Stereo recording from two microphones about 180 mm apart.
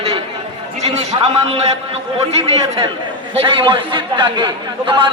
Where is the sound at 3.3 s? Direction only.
30° right (ahead or behind).